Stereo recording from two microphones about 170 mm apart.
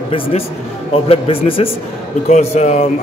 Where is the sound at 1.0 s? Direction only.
35° left (ahead or behind).